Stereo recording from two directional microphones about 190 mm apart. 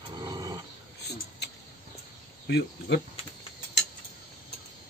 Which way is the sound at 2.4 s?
65° left (ahead or behind).